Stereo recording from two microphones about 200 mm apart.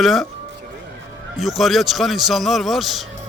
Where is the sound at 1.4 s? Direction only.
Centre (ahead or behind).